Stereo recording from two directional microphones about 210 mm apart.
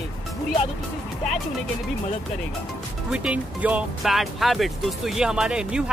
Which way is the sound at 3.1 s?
5° right (ahead or behind).